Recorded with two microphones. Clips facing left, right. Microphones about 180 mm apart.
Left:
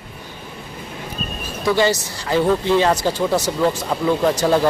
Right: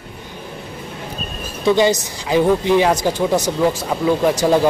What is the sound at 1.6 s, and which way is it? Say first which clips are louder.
Speech: right 3 dB; 20° right (ahead or behind).